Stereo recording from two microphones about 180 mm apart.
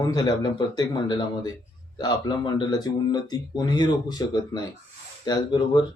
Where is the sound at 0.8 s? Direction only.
20° left (ahead or behind).